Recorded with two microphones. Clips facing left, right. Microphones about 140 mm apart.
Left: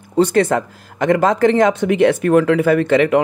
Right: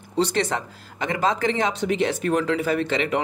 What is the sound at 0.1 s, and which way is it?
Speech, 50° left (ahead or behind).